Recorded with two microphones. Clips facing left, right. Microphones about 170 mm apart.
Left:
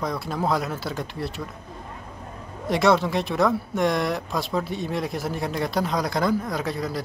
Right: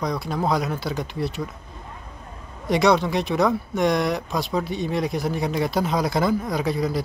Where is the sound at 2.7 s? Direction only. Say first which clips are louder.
Right 1 dB; centre (ahead or behind).